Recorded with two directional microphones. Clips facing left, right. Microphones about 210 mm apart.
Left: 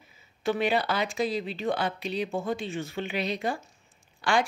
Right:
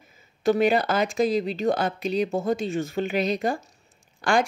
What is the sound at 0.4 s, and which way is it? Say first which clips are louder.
Speech: right 6 dB; 45° right (ahead or behind).